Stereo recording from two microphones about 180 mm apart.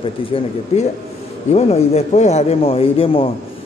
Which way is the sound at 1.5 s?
35° left (ahead or behind).